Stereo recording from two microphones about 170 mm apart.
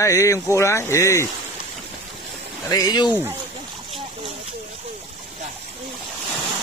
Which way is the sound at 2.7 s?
25° left (ahead or behind).